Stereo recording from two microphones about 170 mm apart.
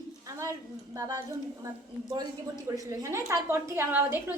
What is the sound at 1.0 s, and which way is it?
Speech, 20° right (ahead or behind).